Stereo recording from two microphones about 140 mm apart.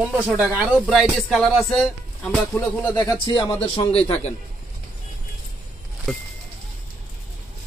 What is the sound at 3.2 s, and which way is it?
Speech, 35° left (ahead or behind).